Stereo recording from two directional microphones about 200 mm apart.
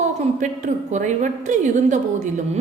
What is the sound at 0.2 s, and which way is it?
A woman's voice, 40° right (ahead or behind).